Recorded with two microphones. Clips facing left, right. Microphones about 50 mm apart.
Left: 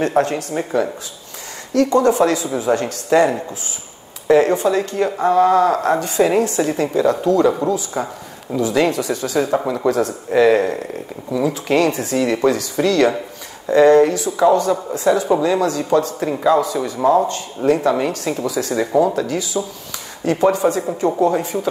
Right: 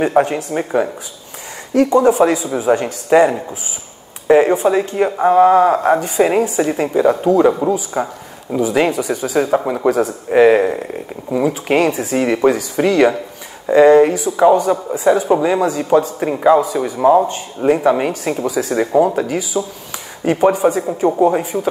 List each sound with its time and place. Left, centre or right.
0.0 s a man's voice: centre
19.2 s a man's voice: centre